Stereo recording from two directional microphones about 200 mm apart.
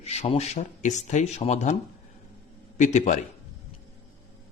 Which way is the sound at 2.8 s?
35° left (ahead or behind).